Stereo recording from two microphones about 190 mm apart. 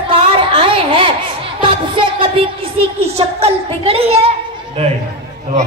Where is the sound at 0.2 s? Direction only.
25° right (ahead or behind).